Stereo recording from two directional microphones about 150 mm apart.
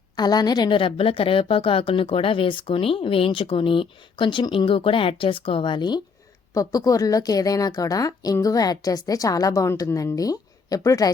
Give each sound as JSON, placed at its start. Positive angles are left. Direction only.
{"t": 0.2, "sound": "a woman's voice", "side_deg": 25}